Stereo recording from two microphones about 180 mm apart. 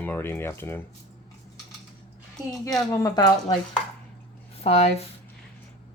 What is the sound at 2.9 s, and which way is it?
Speech, 20° left (ahead or behind).